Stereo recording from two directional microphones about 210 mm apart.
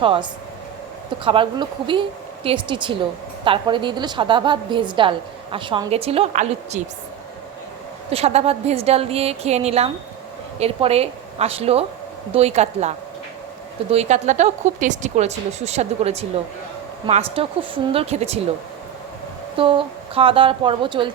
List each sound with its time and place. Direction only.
0.0 s a woman's voice: 25° right (ahead or behind)
8.1 s a woman's voice: 30° right (ahead or behind)
13.9 s a woman's voice: 30° right (ahead or behind)
19.5 s a woman's voice: 25° right (ahead or behind)